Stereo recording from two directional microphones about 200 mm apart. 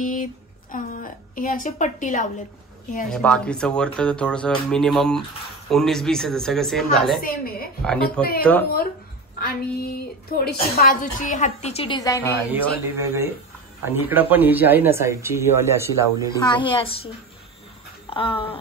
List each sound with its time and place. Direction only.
0.0 s a woman's voice: 40° left (ahead or behind)
3.1 s speech: 5° left (ahead or behind)
7.2 s a woman's voice: 45° left (ahead or behind)
7.8 s a woman's voice: 5° left (ahead or behind)
9.4 s a woman's voice: 50° left (ahead or behind); by 12.0 s 30° left (ahead or behind)
12.0 s a woman's voice: 15° left (ahead or behind)
12.5 s speech: 10° right (ahead or behind)
16.3 s a woman's voice: 25° left (ahead or behind)
18.1 s a woman's voice: 25° left (ahead or behind)